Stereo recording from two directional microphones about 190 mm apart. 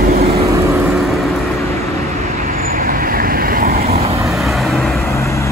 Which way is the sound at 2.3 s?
45° right (ahead or behind).